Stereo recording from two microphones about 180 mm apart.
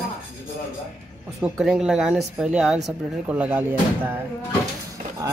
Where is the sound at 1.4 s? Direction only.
5° right (ahead or behind).